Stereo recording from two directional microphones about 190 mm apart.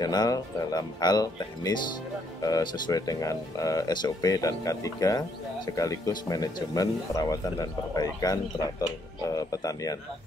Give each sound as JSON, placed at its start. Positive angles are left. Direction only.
{"t": 0.0, "sound": "speech", "side_deg": 20}